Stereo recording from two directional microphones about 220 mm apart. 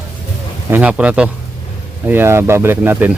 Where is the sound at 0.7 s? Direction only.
5° right (ahead or behind).